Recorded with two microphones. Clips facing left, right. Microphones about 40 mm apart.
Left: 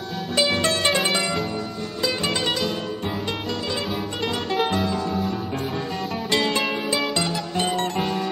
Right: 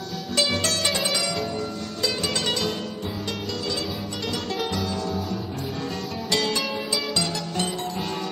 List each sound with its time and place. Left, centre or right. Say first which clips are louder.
0.4 s music: left 3 dB; left
4.3 s music: left 5 dB; left
6.3 s music: left 3 dB; left